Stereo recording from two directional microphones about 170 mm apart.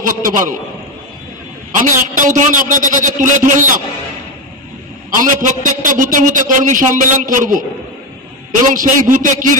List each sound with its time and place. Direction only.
0.0 s a man's voice: 50° right (ahead or behind)
1.8 s a man's voice: 50° right (ahead or behind)
5.2 s a man's voice: 50° right (ahead or behind)